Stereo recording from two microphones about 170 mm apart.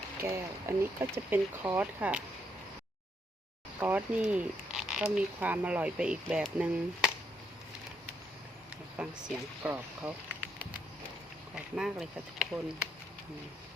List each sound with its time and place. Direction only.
0.2 s speech: 15° right (ahead or behind)
3.8 s speech: 10° right (ahead or behind)
9.6 s speech: 10° right (ahead or behind)
11.5 s speech: centre (ahead or behind)